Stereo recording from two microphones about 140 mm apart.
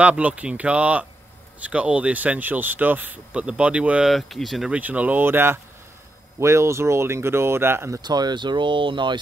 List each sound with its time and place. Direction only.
0.0 s speech: 10° right (ahead or behind)
8.0 s speech: 30° right (ahead or behind)